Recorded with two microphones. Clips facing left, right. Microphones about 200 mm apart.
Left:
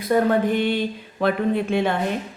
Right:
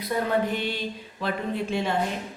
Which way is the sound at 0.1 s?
55° left (ahead or behind).